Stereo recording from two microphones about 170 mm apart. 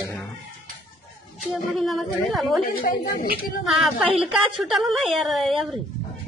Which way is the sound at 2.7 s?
55° left (ahead or behind).